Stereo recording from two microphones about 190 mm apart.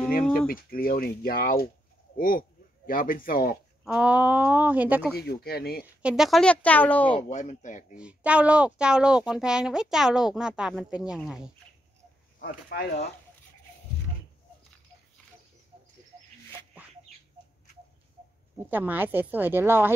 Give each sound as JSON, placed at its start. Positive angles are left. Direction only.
{"t": 0.5, "sound": "speech", "side_deg": 50}
{"t": 3.8, "sound": "speech", "side_deg": -5}
{"t": 5.1, "sound": "speech", "side_deg": 55}
{"t": 6.0, "sound": "speech", "side_deg": 0}
{"t": 7.2, "sound": "speech", "side_deg": 40}
{"t": 7.9, "sound": "speech", "side_deg": -5}
{"t": 12.4, "sound": "speech", "side_deg": 50}
{"t": 18.7, "sound": "speech", "side_deg": -10}